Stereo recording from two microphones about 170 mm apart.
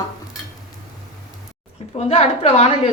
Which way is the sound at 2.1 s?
40° left (ahead or behind).